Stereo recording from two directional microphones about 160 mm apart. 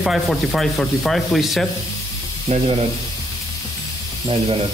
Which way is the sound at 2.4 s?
40° right (ahead or behind).